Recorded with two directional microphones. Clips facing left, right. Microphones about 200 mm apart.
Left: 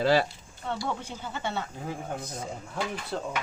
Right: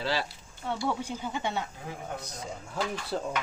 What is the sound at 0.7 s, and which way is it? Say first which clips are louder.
Speech: right 2 dB; 10° right (ahead or behind).